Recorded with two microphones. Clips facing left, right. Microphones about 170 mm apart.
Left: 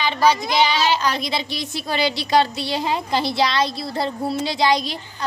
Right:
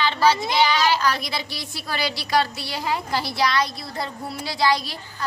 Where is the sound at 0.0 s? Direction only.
15° left (ahead or behind).